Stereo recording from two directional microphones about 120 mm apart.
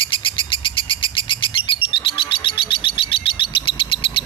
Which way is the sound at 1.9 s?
45° left (ahead or behind).